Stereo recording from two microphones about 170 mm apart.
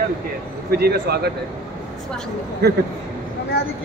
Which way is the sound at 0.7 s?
70° right (ahead or behind).